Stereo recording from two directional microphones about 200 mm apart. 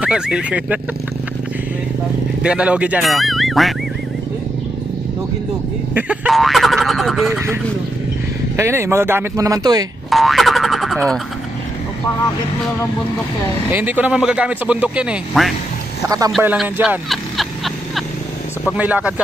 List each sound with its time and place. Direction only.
0.0 s speech: 5° right (ahead or behind)
2.4 s speech: 5° right (ahead or behind)
5.9 s speech: 5° right (ahead or behind)
8.5 s speech: 15° right (ahead or behind)
10.0 s speech: centre (ahead or behind)
13.7 s speech: 10° right (ahead or behind)
16.0 s a man's voice: 20° right (ahead or behind)
16.3 s speech: centre (ahead or behind)
18.7 s speech: 5° right (ahead or behind)